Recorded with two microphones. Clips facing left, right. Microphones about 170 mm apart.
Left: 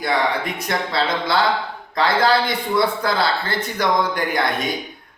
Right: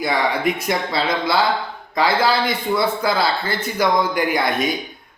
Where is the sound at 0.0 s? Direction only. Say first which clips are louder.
Right 1 dB; 10° right (ahead or behind).